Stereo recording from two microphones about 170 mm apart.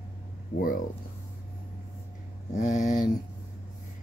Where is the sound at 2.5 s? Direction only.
50° left (ahead or behind).